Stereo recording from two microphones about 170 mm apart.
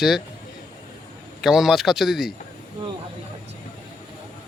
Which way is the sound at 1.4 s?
Centre (ahead or behind).